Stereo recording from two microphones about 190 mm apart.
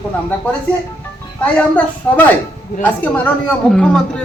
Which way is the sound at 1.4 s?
10° left (ahead or behind).